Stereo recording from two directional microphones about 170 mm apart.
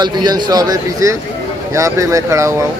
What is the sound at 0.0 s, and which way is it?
A man's voice, 25° right (ahead or behind).